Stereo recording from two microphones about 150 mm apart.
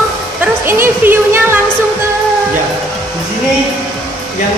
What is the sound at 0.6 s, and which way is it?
Speech, 15° right (ahead or behind).